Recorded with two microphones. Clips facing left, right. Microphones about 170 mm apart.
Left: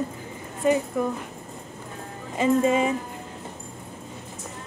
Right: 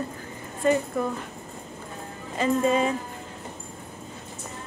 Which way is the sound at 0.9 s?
15° left (ahead or behind).